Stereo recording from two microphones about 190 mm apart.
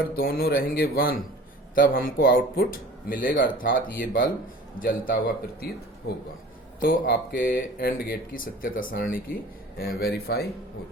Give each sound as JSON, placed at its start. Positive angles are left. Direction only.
{"t": 0.2, "sound": "speech", "side_deg": 50}
{"t": 6.9, "sound": "speech", "side_deg": 50}